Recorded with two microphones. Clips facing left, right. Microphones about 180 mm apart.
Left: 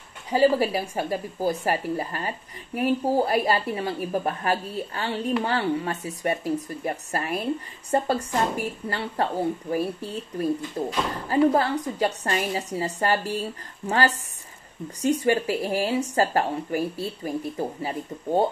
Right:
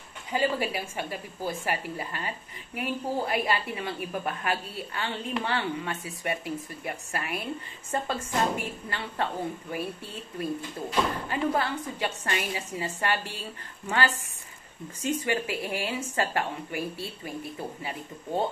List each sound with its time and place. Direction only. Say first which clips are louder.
0.3 s a woman's voice: left 7 dB; 35° left (ahead or behind)